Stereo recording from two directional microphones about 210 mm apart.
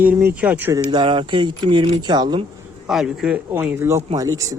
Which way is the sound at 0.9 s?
20° right (ahead or behind).